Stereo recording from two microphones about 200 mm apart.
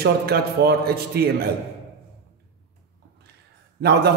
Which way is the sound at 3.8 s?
55° right (ahead or behind).